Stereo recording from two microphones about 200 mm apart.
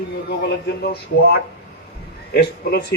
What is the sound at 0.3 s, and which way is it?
Speech, 55° left (ahead or behind).